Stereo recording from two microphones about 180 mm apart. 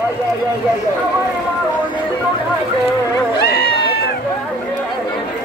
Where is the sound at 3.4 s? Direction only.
60° left (ahead or behind).